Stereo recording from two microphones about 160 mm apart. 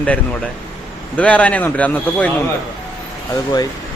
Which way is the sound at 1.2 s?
10° left (ahead or behind).